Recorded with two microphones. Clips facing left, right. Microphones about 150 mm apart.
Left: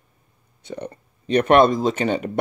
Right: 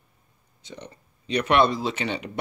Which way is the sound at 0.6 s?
55° left (ahead or behind).